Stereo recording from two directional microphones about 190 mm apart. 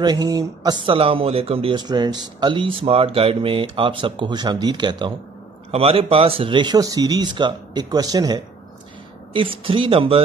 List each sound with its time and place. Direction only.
0.0 s speech: 20° right (ahead or behind)